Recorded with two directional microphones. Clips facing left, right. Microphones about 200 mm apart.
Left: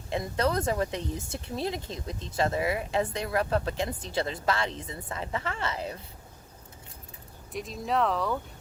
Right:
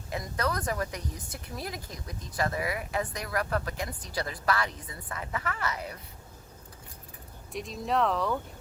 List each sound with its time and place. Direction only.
0.1 s speech: 25° left (ahead or behind)
7.5 s speech: centre (ahead or behind)